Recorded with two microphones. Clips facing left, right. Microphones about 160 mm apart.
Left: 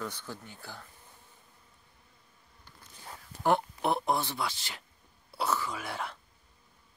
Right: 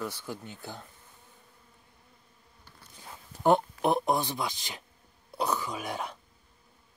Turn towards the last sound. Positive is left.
turn(degrees=-15)  # may be behind; listen again after turning